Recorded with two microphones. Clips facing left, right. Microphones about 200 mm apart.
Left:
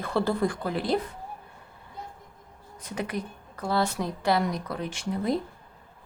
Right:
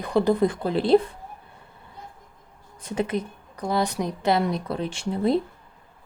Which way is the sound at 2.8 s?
30° right (ahead or behind).